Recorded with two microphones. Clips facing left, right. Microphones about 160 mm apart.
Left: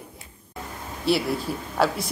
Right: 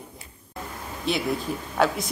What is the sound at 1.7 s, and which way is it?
Speech, centre (ahead or behind).